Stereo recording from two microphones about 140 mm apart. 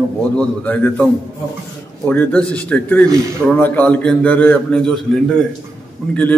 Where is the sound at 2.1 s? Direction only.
10° left (ahead or behind).